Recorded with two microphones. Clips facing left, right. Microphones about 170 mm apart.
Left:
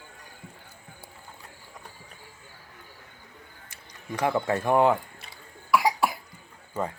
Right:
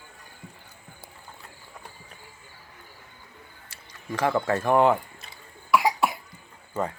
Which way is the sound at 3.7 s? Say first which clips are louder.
Right 2 dB; 20° left (ahead or behind).